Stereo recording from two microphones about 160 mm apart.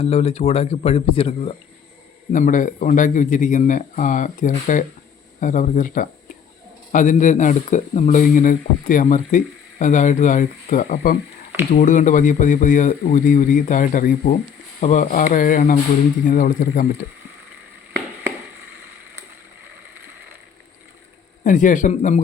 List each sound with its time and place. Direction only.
0.0 s a man's voice: 40° left (ahead or behind)
2.3 s speech: 55° left (ahead or behind)
11.7 s speech: 55° left (ahead or behind)
14.8 s speech: 50° left (ahead or behind)
21.4 s speech: 55° left (ahead or behind)